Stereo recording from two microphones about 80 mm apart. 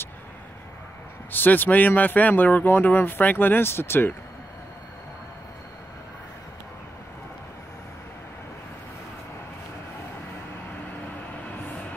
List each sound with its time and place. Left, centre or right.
1.3 s speech: left